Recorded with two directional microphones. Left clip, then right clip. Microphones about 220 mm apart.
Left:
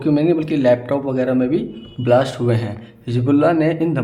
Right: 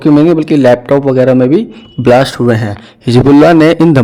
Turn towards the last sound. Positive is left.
turn(degrees=-45)  # may be behind; listen again after turning